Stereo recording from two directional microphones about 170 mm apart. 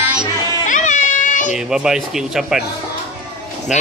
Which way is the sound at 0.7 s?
50° left (ahead or behind).